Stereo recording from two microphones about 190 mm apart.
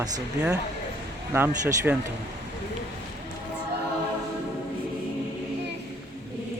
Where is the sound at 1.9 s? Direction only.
5° right (ahead or behind).